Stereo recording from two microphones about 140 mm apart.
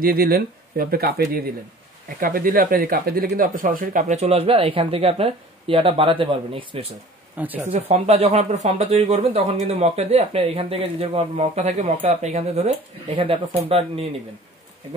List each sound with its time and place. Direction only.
0.0 s speech: 90° right; by 6.9 s 40° right (ahead or behind)
7.3 s speech: 10° right (ahead or behind)
7.7 s speech: 50° right (ahead or behind)